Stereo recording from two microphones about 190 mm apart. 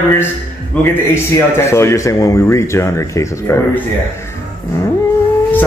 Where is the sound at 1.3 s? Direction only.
15° left (ahead or behind).